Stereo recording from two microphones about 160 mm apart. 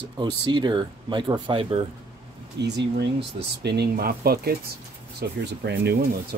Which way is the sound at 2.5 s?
90° right.